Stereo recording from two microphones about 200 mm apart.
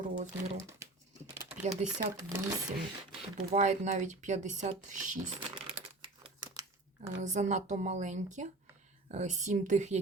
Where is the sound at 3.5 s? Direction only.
35° right (ahead or behind).